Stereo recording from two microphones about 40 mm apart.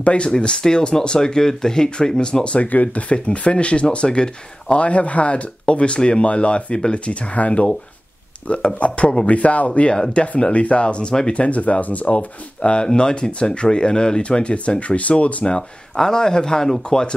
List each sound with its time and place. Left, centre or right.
0.0 s speech: left
11.3 s speech: left
15.4 s speech: centre